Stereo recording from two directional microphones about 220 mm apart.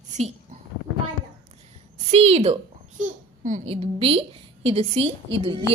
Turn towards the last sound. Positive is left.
turn(degrees=-25)  # may be behind; listen again after turning